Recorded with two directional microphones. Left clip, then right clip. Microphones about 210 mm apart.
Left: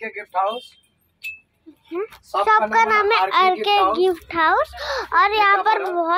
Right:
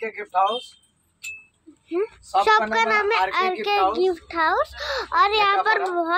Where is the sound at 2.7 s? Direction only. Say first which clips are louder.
Left 4 dB; 5° left (ahead or behind).